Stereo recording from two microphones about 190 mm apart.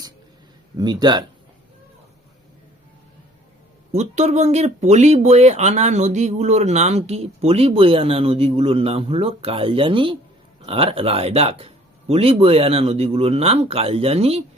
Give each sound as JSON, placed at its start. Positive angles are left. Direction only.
{"t": 0.8, "sound": "speech", "side_deg": -20}
{"t": 3.9, "sound": "speech", "side_deg": -35}